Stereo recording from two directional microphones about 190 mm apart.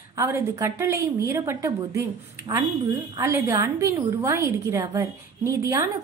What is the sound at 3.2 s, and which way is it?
A woman's voice, 15° right (ahead or behind).